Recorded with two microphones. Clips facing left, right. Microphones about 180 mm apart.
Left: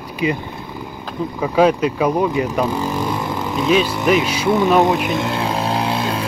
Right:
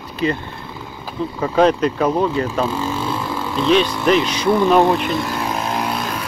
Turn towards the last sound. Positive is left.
turn(degrees=30)  # may be behind; listen again after turning